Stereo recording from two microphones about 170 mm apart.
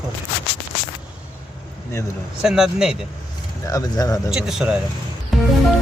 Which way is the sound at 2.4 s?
5° right (ahead or behind).